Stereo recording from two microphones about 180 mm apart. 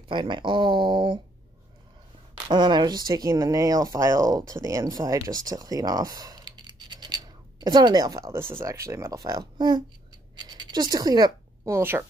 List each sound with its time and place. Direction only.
0.1 s speech: 25° right (ahead or behind)
2.4 s speech: 25° right (ahead or behind)
6.9 s scratch: 25° right (ahead or behind)
8.5 s speech: 15° right (ahead or behind)